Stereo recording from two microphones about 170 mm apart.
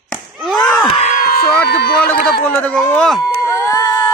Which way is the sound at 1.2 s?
65° left (ahead or behind).